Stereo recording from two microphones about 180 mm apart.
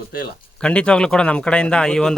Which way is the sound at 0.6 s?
5° left (ahead or behind).